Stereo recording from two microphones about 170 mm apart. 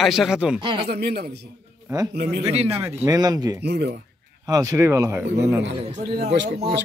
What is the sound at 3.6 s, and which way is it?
Speech, 75° right (ahead or behind).